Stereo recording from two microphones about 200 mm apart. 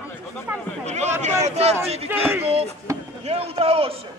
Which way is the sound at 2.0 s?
10° right (ahead or behind).